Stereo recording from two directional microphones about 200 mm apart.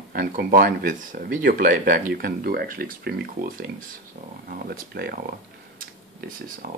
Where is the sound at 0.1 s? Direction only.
45° right (ahead or behind).